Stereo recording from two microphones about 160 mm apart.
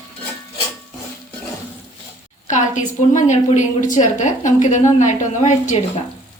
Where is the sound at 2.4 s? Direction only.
50° left (ahead or behind).